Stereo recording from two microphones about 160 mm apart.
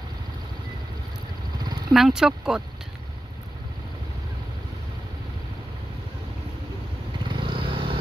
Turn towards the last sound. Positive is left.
turn(degrees=-35)  # may be behind; listen again after turning